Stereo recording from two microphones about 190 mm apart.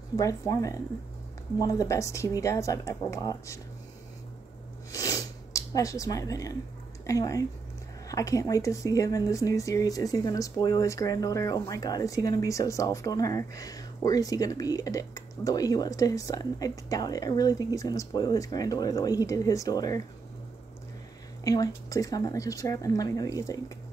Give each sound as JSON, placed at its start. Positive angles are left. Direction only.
{"t": 0.1, "sound": "speech", "side_deg": 15}
{"t": 4.9, "sound": "a sound", "side_deg": 20}
{"t": 7.1, "sound": "speech", "side_deg": 15}
{"t": 21.5, "sound": "speech", "side_deg": 20}